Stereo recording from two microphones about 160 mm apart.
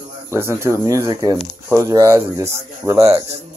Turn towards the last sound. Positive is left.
turn(degrees=-20)  # may be behind; listen again after turning